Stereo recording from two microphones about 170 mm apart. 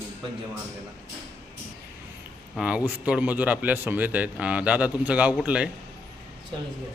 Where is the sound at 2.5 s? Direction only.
5° right (ahead or behind).